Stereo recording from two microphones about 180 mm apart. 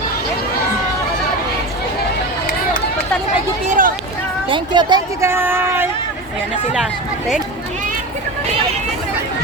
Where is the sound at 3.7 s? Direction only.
50° right (ahead or behind).